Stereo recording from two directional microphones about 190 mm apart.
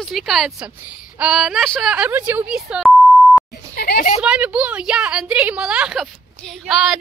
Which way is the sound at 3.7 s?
50° left (ahead or behind).